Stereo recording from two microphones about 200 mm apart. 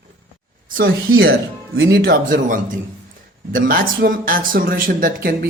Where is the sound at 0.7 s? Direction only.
45° right (ahead or behind).